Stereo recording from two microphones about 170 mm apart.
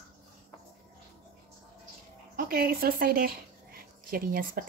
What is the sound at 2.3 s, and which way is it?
A woman's voice, 60° right (ahead or behind).